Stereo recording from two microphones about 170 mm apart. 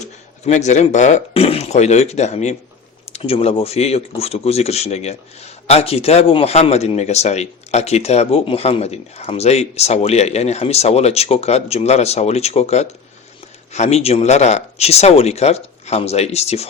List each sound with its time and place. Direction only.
0.0 s speech: 45° left (ahead or behind)